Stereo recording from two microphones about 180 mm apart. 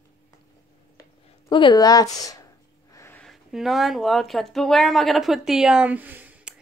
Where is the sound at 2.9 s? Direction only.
15° left (ahead or behind).